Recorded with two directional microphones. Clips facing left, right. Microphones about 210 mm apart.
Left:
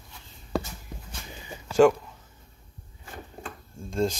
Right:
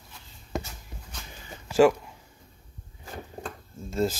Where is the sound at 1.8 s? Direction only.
5° right (ahead or behind).